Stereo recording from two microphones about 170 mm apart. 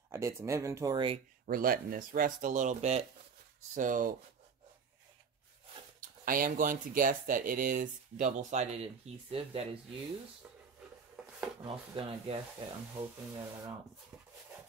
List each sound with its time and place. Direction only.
0.1 s speech: 15° right (ahead or behind)
1.5 s speech: 55° right (ahead or behind)
5.9 s speech: 55° right (ahead or behind); by 9.7 s 35° right (ahead or behind)
11.2 s a sound: 5° right (ahead or behind)
11.6 s speech: 30° right (ahead or behind)